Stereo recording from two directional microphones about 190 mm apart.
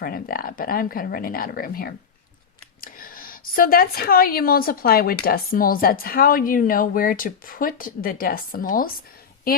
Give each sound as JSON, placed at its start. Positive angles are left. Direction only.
{"t": 0.0, "sound": "a woman's voice", "side_deg": 50}